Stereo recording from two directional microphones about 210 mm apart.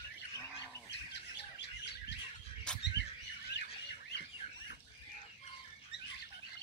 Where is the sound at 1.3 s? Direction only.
55° left (ahead or behind).